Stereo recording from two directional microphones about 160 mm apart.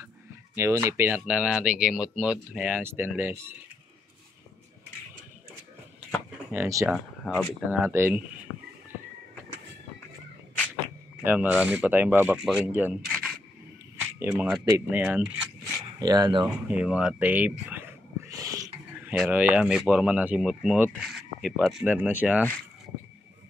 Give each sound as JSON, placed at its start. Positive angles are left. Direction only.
{"t": 0.6, "sound": "speech", "side_deg": -15}
{"t": 6.5, "sound": "speech", "side_deg": -15}
{"t": 6.9, "sound": "speech", "side_deg": -5}
{"t": 11.2, "sound": "speech", "side_deg": -10}
{"t": 13.0, "sound": "a sound", "side_deg": 5}
{"t": 14.3, "sound": "speech", "side_deg": 0}
{"t": 15.6, "sound": "a sound", "side_deg": -25}
{"t": 16.6, "sound": "a sound", "side_deg": -5}
{"t": 19.0, "sound": "speech", "side_deg": -5}